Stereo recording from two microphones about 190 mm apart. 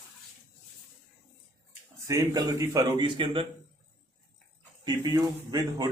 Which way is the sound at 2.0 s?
20° right (ahead or behind).